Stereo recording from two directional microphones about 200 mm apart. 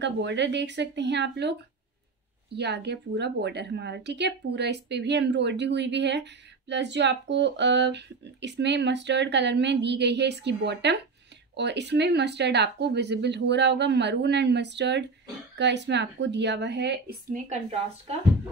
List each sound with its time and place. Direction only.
0.0 s speech: 60° right (ahead or behind)
17.3 s a woman's voice: 35° right (ahead or behind)